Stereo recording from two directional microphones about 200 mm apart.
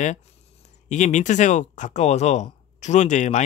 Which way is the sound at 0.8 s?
35° left (ahead or behind).